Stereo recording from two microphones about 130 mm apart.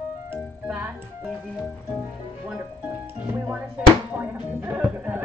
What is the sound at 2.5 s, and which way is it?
Speech, 10° right (ahead or behind).